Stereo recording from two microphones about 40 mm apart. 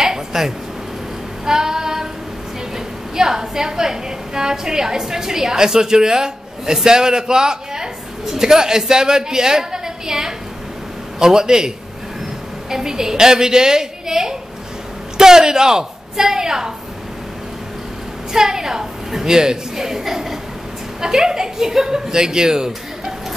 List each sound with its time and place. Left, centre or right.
0.0 s a sound: centre
1.4 s female singing: centre
3.2 s a woman's voice: centre
18.3 s a woman's voice: centre